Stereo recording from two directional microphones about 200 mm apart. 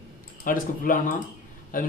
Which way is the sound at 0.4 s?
45° left (ahead or behind).